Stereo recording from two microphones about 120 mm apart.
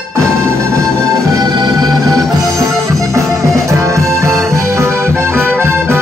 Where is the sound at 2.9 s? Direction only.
25° right (ahead or behind).